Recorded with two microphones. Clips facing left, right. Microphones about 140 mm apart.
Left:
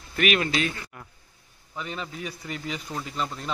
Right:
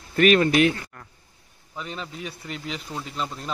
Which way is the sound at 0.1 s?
35° right (ahead or behind).